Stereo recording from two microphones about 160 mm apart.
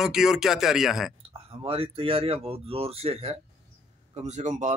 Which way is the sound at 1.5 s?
35° right (ahead or behind).